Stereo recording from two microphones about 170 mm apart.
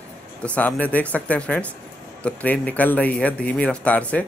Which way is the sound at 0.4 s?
10° left (ahead or behind).